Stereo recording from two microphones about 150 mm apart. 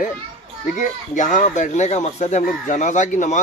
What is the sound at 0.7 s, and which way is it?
Speech, 55° left (ahead or behind).